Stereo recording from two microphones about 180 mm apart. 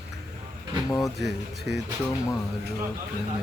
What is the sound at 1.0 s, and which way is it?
Speech, centre (ahead or behind).